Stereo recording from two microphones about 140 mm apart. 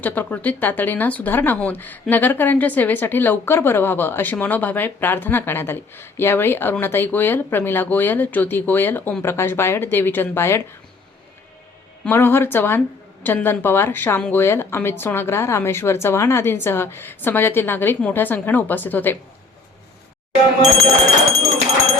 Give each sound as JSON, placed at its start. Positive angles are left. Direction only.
{"t": 0.0, "sound": "speech", "side_deg": 10}
{"t": 12.0, "sound": "speech", "side_deg": 15}